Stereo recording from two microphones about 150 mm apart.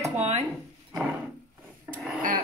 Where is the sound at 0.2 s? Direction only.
45° right (ahead or behind).